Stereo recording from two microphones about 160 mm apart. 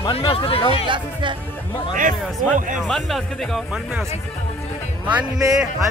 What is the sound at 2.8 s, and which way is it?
Speech, centre (ahead or behind).